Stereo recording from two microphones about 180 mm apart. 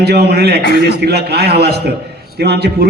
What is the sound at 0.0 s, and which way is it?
A man's voice, 65° right (ahead or behind).